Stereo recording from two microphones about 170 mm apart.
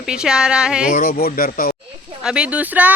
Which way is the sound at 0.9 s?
55° left (ahead or behind).